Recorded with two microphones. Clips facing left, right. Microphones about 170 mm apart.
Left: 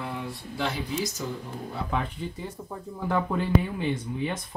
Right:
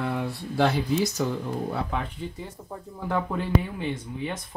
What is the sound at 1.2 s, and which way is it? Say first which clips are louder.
Speech: right 6 dB; 70° right (ahead or behind).